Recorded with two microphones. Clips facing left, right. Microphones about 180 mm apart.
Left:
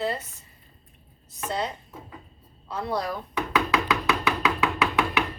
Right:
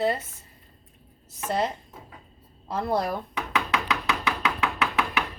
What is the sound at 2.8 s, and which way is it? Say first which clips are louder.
Speech: right 3 dB; 55° right (ahead or behind).